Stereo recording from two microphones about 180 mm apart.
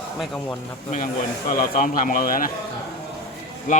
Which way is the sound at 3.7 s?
45° left (ahead or behind).